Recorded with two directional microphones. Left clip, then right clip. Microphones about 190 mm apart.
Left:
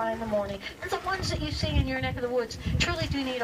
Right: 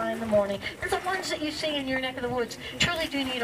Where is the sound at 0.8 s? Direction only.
30° left (ahead or behind).